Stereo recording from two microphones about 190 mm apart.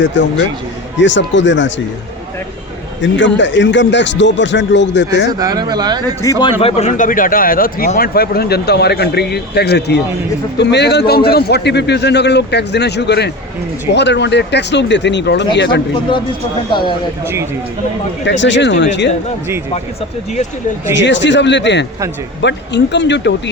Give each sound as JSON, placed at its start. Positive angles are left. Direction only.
{"t": 0.0, "sound": "speech", "side_deg": 70}
{"t": 3.0, "sound": "speech", "side_deg": 70}
{"t": 5.4, "sound": "speech", "side_deg": -20}
{"t": 6.6, "sound": "a man's voice", "side_deg": 30}
{"t": 18.3, "sound": "speech", "side_deg": 70}
{"t": 21.0, "sound": "speech", "side_deg": 70}